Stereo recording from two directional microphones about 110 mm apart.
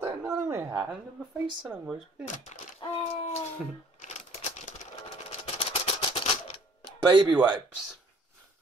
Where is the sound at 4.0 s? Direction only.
90° left; by 6.2 s 55° left (ahead or behind).